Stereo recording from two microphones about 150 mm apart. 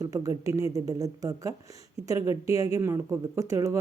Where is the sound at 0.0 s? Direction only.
20° right (ahead or behind).